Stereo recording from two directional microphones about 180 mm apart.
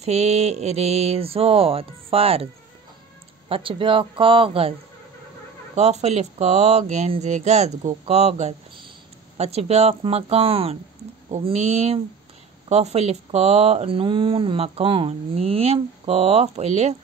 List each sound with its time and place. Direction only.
0.0 s speech: 35° right (ahead or behind)
5.8 s speech: 35° right (ahead or behind)